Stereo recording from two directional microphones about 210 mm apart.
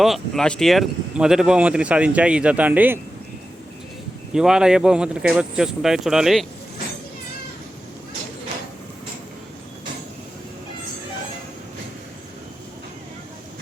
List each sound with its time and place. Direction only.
0.0 s speech: centre (ahead or behind)
4.4 s speech: 5° right (ahead or behind)